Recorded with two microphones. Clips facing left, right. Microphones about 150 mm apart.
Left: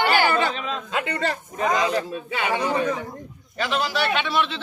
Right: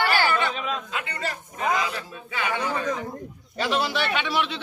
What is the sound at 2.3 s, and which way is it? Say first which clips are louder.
Speech: left 4 dB; 25° left (ahead or behind).